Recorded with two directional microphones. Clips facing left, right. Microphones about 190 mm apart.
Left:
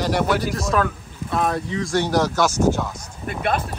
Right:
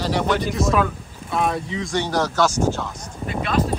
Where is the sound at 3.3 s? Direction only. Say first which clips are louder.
Right 1 dB; 55° left (ahead or behind).